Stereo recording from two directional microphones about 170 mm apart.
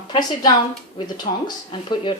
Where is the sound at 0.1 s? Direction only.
25° left (ahead or behind).